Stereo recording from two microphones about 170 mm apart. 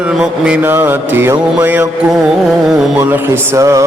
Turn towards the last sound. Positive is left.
turn(degrees=-20)  # may be behind; listen again after turning